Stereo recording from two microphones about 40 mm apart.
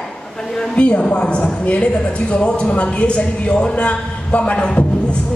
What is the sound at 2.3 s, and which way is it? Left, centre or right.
A man's voice, left.